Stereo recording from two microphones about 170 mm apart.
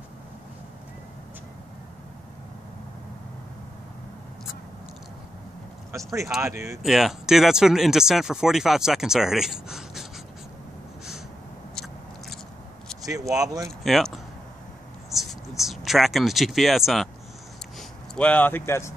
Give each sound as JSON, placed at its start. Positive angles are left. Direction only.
{"t": 6.4, "sound": "speech", "side_deg": -15}
{"t": 6.8, "sound": "speech", "side_deg": 0}
{"t": 11.7, "sound": "biting", "side_deg": 5}
{"t": 13.0, "sound": "speech", "side_deg": -20}
{"t": 13.8, "sound": "speech", "side_deg": 0}
{"t": 15.0, "sound": "a sound", "side_deg": 0}
{"t": 17.7, "sound": "speech", "side_deg": 5}